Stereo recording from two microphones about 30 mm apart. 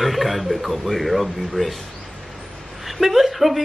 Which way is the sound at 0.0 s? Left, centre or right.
Centre.